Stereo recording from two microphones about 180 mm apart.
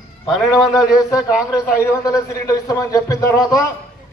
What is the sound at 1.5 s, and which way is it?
A man's voice, 15° left (ahead or behind).